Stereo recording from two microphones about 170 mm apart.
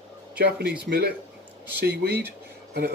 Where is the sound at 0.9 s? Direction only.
70° right (ahead or behind).